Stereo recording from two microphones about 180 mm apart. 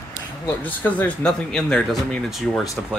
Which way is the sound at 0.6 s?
10° left (ahead or behind).